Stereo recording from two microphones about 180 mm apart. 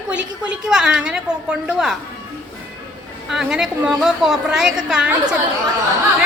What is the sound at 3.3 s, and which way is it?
A woman's voice, 5° right (ahead or behind).